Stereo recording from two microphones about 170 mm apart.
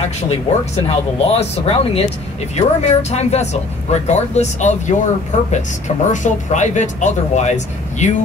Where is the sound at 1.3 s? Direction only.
35° left (ahead or behind).